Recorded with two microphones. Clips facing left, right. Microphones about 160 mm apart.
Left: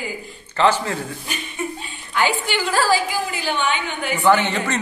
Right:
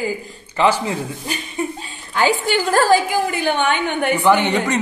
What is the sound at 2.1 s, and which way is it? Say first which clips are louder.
A woman's voice: right 4 dB; 40° right (ahead or behind).